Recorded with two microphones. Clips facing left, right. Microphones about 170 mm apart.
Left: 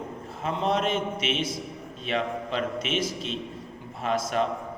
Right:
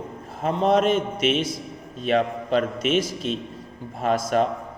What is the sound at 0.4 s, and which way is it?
A man's voice, 45° right (ahead or behind).